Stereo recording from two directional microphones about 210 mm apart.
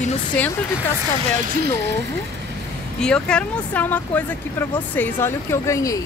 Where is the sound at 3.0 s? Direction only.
5° left (ahead or behind).